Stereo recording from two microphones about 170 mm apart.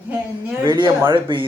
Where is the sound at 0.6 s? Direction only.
30° right (ahead or behind).